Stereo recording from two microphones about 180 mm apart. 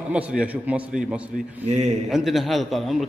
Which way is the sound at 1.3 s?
40° right (ahead or behind).